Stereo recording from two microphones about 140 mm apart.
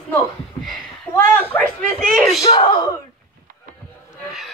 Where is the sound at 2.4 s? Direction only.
25° left (ahead or behind).